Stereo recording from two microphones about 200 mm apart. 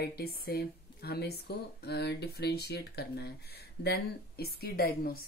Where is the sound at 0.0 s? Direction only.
50° left (ahead or behind).